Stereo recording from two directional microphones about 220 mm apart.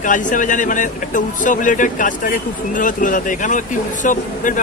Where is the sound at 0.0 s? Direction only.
35° left (ahead or behind).